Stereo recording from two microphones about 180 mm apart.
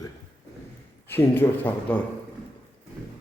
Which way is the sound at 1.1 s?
10° left (ahead or behind).